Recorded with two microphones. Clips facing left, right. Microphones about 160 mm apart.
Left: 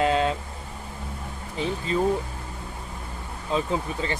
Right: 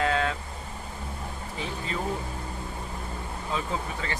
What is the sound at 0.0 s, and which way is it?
Vehicle, 20° left (ahead or behind).